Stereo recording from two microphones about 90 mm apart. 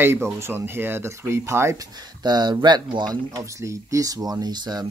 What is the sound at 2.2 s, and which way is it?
Speech, 55° right (ahead or behind).